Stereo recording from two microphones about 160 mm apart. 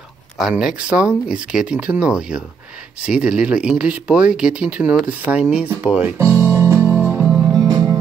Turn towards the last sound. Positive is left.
turn(degrees=-25)  # may be behind; listen again after turning